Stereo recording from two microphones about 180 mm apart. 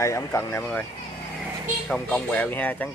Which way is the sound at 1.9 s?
10° left (ahead or behind).